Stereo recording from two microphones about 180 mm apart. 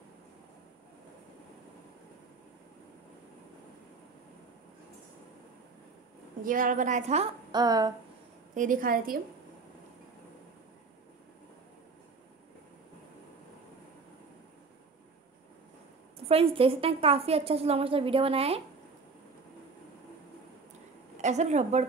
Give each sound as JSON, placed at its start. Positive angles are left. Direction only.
{"t": 6.4, "sound": "a woman's voice", "side_deg": -50}
{"t": 7.5, "sound": "a sound", "side_deg": -20}
{"t": 8.5, "sound": "a woman's voice", "side_deg": -50}
{"t": 16.3, "sound": "a woman's voice", "side_deg": -30}
{"t": 21.2, "sound": "a woman's voice", "side_deg": -40}